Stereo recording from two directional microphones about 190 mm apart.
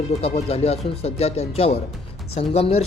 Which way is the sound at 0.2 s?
30° left (ahead or behind).